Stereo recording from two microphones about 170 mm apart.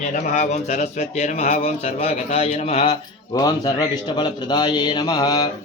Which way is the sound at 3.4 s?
20° left (ahead or behind).